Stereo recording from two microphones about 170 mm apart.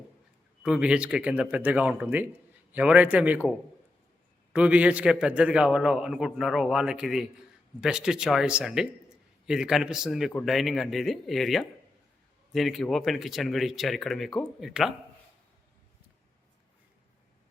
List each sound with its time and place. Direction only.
0.6 s speech: 5° right (ahead or behind)
4.5 s a man's voice: 10° right (ahead or behind)